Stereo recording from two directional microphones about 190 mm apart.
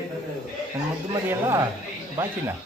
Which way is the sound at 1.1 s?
15° right (ahead or behind).